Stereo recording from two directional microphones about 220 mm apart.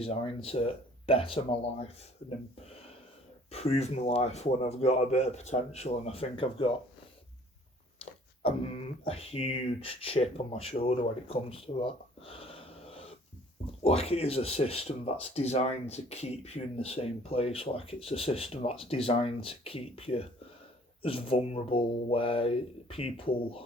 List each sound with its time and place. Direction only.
0.0 s speech: 25° left (ahead or behind)
3.5 s speech: 30° left (ahead or behind)
8.4 s speech: 25° left (ahead or behind)